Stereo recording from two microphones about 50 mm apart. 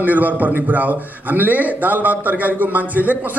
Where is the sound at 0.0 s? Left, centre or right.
Right.